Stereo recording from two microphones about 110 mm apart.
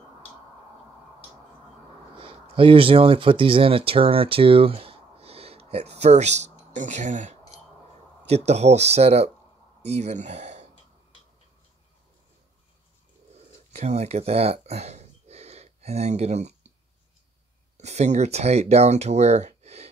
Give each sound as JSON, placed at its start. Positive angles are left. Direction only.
{"t": 2.1, "sound": "speech", "side_deg": -55}
{"t": 8.3, "sound": "speech", "side_deg": -80}
{"t": 13.7, "sound": "a sound", "side_deg": -90}
{"t": 17.7, "sound": "speech", "side_deg": -90}